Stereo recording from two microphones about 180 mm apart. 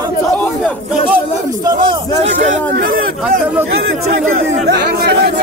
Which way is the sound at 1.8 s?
40° right (ahead or behind).